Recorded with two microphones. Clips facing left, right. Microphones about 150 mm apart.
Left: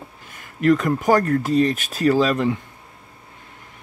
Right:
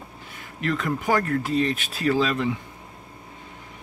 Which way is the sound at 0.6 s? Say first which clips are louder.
Left 8 dB; 45° left (ahead or behind).